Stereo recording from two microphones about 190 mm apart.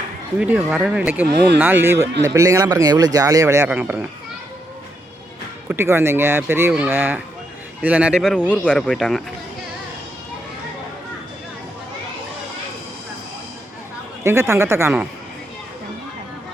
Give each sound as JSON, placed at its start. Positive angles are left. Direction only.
{"t": 0.3, "sound": "speech", "side_deg": -5}
{"t": 1.3, "sound": "speech", "side_deg": -60}
{"t": 1.5, "sound": "speech", "side_deg": -10}
{"t": 5.6, "sound": "speech", "side_deg": -10}
{"t": 14.3, "sound": "speech", "side_deg": -15}